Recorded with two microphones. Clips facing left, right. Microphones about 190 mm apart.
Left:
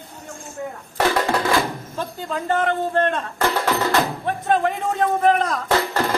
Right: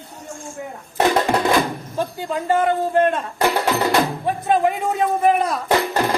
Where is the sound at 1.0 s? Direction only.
20° right (ahead or behind).